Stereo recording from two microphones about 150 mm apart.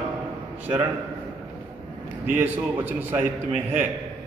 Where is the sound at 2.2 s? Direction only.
10° right (ahead or behind).